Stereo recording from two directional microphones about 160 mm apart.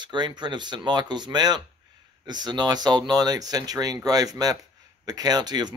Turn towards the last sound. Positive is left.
turn(degrees=-25)  # may be behind; listen again after turning